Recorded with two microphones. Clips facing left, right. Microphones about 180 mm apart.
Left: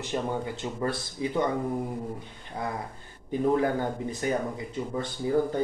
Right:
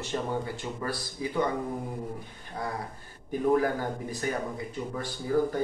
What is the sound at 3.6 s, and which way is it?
Speech, 20° left (ahead or behind).